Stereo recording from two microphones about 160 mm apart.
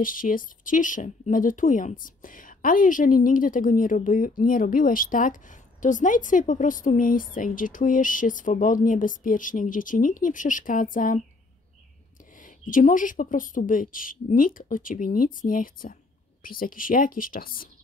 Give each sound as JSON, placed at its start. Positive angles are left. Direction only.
{"t": 0.0, "sound": "speech", "side_deg": 60}
{"t": 12.4, "sound": "speech", "side_deg": 55}